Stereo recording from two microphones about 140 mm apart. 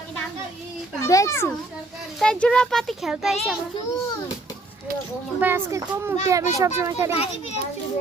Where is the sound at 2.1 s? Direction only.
5° left (ahead or behind).